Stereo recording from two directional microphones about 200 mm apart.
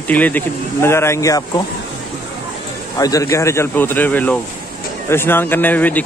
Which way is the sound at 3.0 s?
15° left (ahead or behind).